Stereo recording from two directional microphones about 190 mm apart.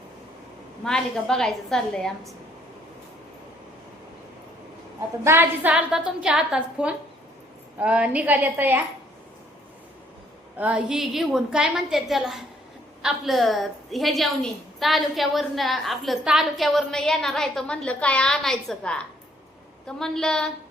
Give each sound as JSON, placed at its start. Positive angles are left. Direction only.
{"t": 0.9, "sound": "a woman's voice", "side_deg": 5}
{"t": 5.2, "sound": "a woman's voice", "side_deg": -10}
{"t": 10.6, "sound": "a woman's voice", "side_deg": -5}